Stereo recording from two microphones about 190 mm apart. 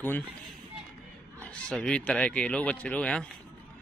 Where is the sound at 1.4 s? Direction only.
5° left (ahead or behind).